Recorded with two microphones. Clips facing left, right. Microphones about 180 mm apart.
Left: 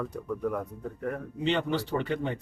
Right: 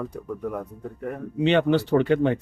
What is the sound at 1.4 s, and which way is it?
Speech, 75° right (ahead or behind).